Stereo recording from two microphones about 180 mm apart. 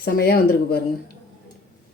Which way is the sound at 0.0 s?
60° left (ahead or behind).